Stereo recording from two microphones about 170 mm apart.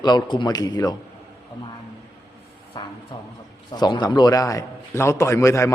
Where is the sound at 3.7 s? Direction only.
25° left (ahead or behind).